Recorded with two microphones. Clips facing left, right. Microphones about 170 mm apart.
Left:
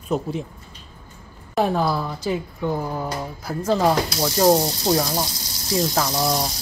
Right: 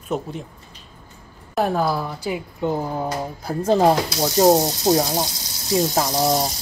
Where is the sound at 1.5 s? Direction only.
Centre (ahead or behind).